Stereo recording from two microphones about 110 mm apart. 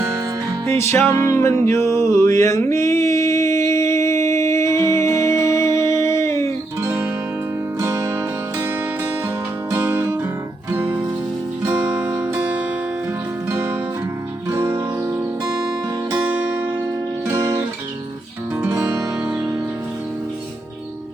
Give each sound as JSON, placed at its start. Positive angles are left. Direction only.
{"t": 0.7, "sound": "mantra", "side_deg": 20}
{"t": 3.7, "sound": "music", "side_deg": 25}
{"t": 6.8, "sound": "music", "side_deg": -10}
{"t": 7.8, "sound": "music", "side_deg": -30}
{"t": 9.6, "sound": "music", "side_deg": -20}
{"t": 14.5, "sound": "music", "side_deg": -25}
{"t": 16.2, "sound": "music", "side_deg": -15}
{"t": 18.7, "sound": "music", "side_deg": -35}
{"t": 19.2, "sound": "music", "side_deg": -10}